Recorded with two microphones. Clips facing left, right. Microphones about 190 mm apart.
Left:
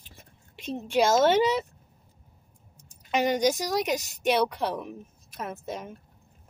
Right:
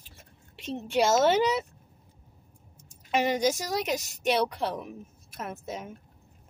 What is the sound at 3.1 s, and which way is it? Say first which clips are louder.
Speech: left 1 dB; centre (ahead or behind).